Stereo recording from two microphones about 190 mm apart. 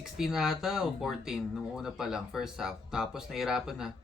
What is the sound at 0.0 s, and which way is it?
Speech, centre (ahead or behind).